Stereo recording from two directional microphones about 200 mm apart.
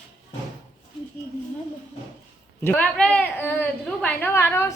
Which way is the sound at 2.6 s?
5° left (ahead or behind).